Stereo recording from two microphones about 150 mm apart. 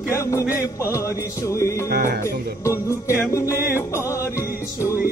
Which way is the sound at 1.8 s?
75° right (ahead or behind).